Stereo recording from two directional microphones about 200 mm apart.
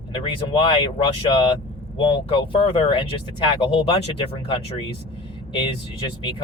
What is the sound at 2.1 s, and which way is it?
Speech, 25° left (ahead or behind).